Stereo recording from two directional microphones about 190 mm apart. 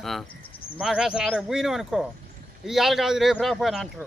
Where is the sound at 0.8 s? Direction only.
5° right (ahead or behind).